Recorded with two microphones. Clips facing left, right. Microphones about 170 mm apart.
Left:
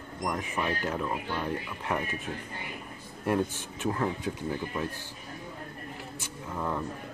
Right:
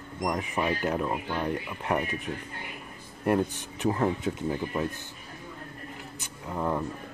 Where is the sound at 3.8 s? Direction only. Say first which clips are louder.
Right 4 dB; 20° right (ahead or behind).